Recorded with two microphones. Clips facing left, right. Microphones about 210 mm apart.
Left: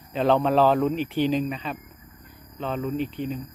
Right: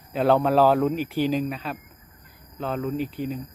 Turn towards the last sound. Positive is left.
turn(degrees=-5)  # may be behind; listen again after turning